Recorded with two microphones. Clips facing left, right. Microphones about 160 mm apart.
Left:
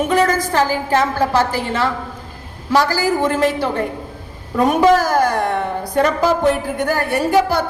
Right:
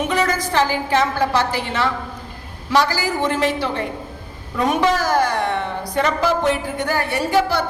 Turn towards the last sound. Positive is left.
turn(degrees=50)  # may be behind; listen again after turning